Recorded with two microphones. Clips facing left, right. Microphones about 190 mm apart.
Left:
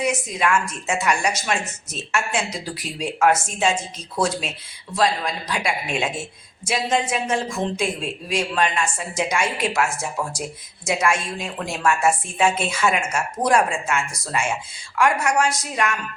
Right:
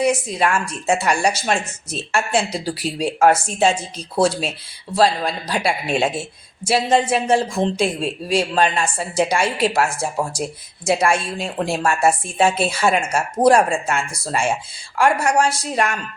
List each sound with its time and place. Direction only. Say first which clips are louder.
0.0 s speech: right 4 dB; 35° right (ahead or behind)